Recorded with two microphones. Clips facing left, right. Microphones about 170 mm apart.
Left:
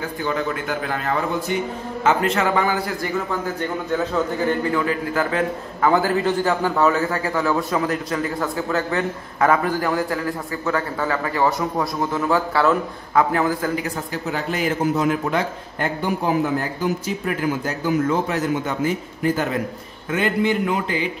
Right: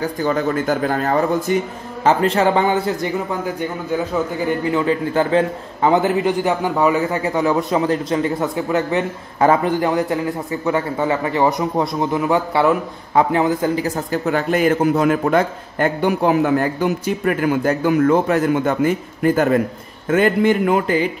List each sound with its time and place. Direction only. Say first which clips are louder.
0.0 s a man's voice: right 5 dB; 40° right (ahead or behind); by 13.8 s 25° right (ahead or behind)
14.2 s a man's voice: right 7 dB; 55° right (ahead or behind)